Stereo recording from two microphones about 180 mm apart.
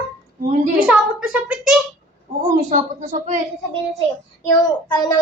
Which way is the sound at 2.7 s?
45° right (ahead or behind).